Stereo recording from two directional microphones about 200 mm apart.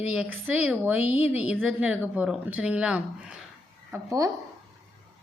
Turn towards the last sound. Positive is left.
turn(degrees=-15)  # may be behind; listen again after turning